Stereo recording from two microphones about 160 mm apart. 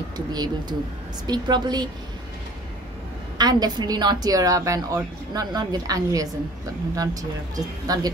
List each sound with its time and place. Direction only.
0.3 s a woman's voice: 25° right (ahead or behind)
3.3 s a woman's voice: 25° right (ahead or behind)